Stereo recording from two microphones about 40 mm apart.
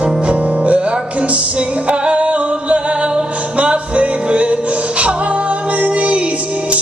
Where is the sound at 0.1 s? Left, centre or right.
Right.